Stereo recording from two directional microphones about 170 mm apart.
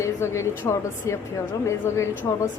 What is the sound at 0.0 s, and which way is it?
A woman's voice, 15° left (ahead or behind).